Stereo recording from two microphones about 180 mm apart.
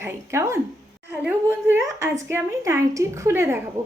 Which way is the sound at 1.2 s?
10° right (ahead or behind).